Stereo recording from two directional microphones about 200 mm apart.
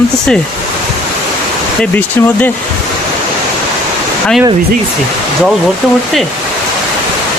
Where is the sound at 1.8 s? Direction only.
10° left (ahead or behind).